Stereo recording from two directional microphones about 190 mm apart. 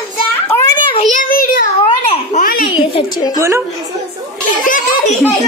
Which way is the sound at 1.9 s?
30° left (ahead or behind).